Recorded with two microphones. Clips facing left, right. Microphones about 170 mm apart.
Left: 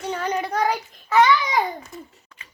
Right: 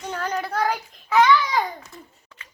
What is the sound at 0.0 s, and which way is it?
Child singing, 10° left (ahead or behind).